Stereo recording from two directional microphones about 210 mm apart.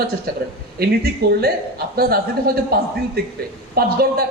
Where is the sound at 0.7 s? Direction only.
50° right (ahead or behind).